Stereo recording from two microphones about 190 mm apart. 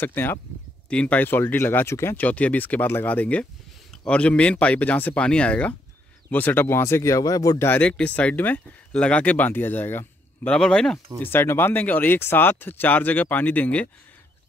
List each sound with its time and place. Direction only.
0.0 s speech: 10° left (ahead or behind)